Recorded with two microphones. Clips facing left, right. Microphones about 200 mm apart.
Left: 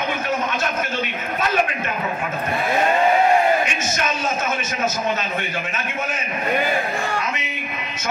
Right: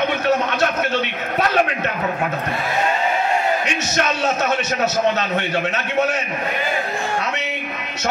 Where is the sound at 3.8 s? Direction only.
70° right (ahead or behind).